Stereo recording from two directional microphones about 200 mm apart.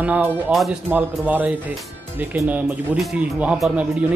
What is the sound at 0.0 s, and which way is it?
Speech, 5° right (ahead or behind).